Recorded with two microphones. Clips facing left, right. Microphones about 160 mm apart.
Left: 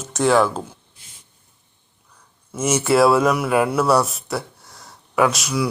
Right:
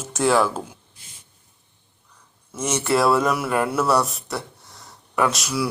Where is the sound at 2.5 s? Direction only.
5° left (ahead or behind).